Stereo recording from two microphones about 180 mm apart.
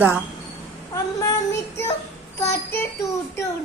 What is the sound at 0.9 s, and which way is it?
Speech, 20° left (ahead or behind).